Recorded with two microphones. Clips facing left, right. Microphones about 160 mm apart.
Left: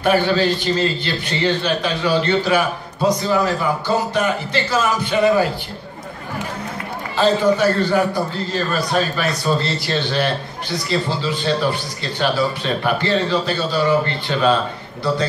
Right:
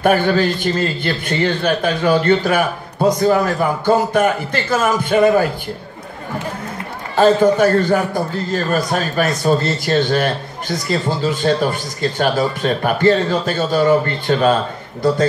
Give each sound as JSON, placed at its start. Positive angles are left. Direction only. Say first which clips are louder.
{"t": 0.0, "sound": "a man's voice", "louder": "right 2 dB", "side_deg": -50}
{"t": 7.2, "sound": "a man's voice", "louder": "right 4 dB", "side_deg": -50}